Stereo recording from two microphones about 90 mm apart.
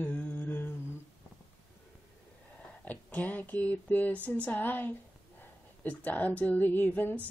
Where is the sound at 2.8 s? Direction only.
20° left (ahead or behind).